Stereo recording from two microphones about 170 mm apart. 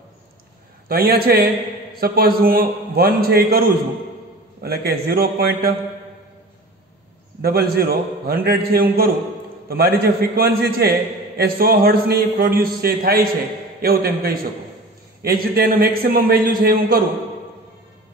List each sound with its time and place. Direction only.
0.8 s a man's voice: 65° right (ahead or behind)
7.4 s a man's voice: 65° right (ahead or behind)